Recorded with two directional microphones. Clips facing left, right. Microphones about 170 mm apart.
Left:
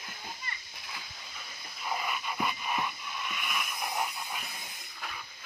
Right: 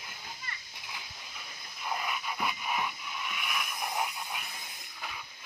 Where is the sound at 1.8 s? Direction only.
Centre (ahead or behind).